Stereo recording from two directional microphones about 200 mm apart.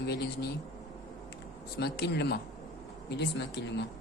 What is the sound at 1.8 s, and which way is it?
Speech, 55° left (ahead or behind).